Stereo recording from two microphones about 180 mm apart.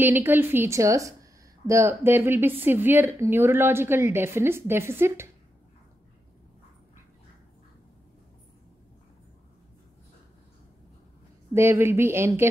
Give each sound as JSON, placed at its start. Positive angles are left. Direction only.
{"t": 0.0, "sound": "speech", "side_deg": -10}
{"t": 11.5, "sound": "speech", "side_deg": -15}